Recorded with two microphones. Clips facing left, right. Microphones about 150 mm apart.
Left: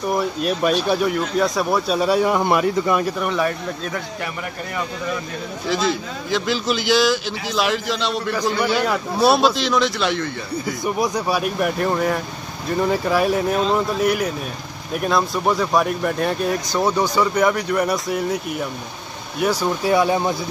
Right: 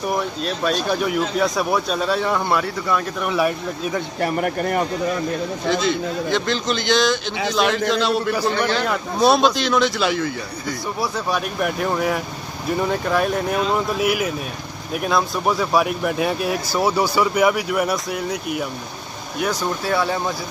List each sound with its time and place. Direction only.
0.4 s speech: 10° left (ahead or behind)
2.0 s speech: 10° left (ahead or behind)
3.2 s speech: 5° right (ahead or behind)
4.2 s speech: 50° right (ahead or behind)
5.7 s speech: centre (ahead or behind)
8.5 s speech: 10° left (ahead or behind)
11.0 s speech: 15° left (ahead or behind)
19.4 s speech: 10° left (ahead or behind)